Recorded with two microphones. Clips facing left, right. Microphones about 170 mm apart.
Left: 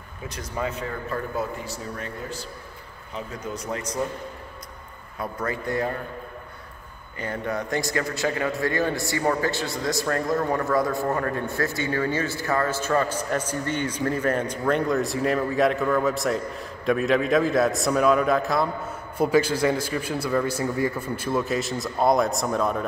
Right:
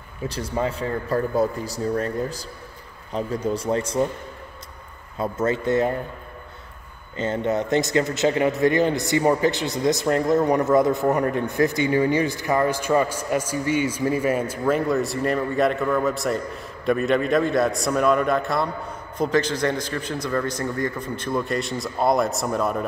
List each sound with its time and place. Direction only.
0.3 s a man's voice: 30° right (ahead or behind)
5.2 s speech: 25° right (ahead or behind)
7.2 s a man's voice: 25° right (ahead or behind); by 22.8 s 5° right (ahead or behind)